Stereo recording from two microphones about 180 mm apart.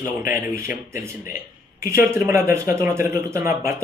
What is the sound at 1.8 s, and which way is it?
Speech, 15° right (ahead or behind).